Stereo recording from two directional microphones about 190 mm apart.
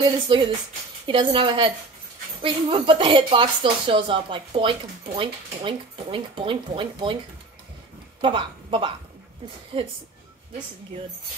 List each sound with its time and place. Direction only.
0.0 s speech: 25° right (ahead or behind)
8.2 s a woman's voice: 25° right (ahead or behind)